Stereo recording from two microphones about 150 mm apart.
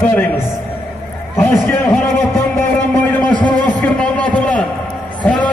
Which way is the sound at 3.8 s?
5° left (ahead or behind).